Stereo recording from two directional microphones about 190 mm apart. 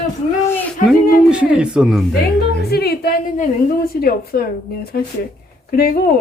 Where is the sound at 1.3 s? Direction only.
5° right (ahead or behind).